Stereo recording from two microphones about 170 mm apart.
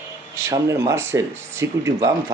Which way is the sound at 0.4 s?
20° right (ahead or behind).